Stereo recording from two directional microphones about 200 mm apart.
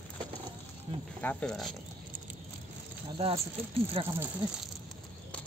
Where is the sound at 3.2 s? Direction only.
30° right (ahead or behind).